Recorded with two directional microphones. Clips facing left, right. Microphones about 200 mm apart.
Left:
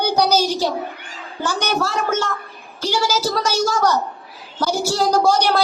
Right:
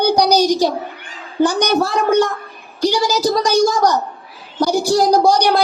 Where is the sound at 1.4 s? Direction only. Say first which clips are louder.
Right 7 dB; 15° right (ahead or behind).